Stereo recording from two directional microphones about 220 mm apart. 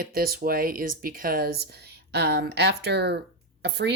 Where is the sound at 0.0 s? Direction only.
40° right (ahead or behind).